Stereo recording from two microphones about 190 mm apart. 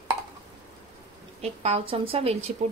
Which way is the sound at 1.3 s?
35° right (ahead or behind).